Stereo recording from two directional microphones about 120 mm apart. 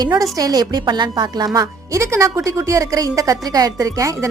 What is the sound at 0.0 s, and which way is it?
Speech, 30° right (ahead or behind).